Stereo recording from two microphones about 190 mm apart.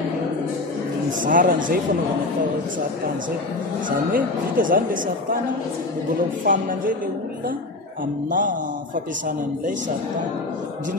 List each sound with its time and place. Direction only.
1.2 s speech: 45° right (ahead or behind)
4.1 s speech: 45° right (ahead or behind)
6.4 s speech: 45° right (ahead or behind)
8.3 s speech: 45° right (ahead or behind)